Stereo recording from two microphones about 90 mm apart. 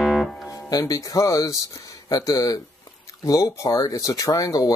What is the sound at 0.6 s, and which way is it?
Speech, 45° left (ahead or behind).